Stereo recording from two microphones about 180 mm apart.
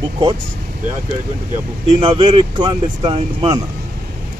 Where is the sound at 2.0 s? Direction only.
30° right (ahead or behind).